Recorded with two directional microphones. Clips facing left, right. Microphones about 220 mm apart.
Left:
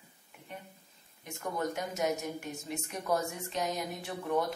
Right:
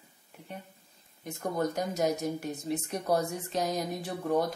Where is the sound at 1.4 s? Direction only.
35° right (ahead or behind).